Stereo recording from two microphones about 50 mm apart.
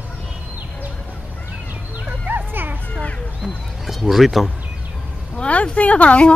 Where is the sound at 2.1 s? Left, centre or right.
Right.